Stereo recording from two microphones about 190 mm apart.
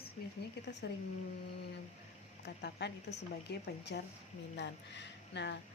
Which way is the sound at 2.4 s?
65° left (ahead or behind).